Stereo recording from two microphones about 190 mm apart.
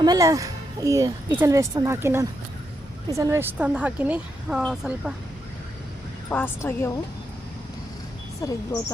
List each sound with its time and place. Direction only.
0.0 s speech: 20° right (ahead or behind); by 5.1 s 5° right (ahead or behind)
6.3 s a woman's voice: 10° left (ahead or behind)
8.4 s a woman's voice: 20° left (ahead or behind)